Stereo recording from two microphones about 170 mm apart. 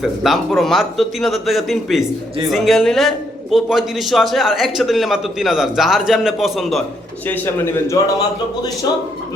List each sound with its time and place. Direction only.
0.0 s a man's voice: centre (ahead or behind)
7.3 s a man's voice: 10° left (ahead or behind)